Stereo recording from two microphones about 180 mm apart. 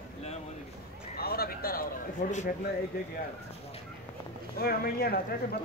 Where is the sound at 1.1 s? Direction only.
60° left (ahead or behind).